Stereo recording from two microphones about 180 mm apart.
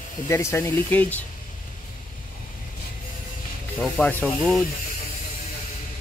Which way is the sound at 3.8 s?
5° left (ahead or behind).